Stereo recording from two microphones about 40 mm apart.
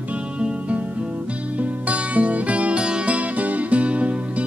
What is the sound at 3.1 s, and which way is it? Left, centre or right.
Music, right.